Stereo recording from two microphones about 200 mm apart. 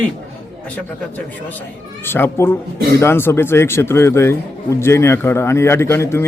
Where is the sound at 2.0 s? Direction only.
10° left (ahead or behind).